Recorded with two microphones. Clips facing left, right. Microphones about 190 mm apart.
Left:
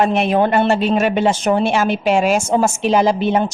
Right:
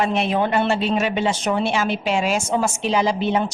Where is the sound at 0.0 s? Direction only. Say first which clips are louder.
Left 5 dB; 55° left (ahead or behind).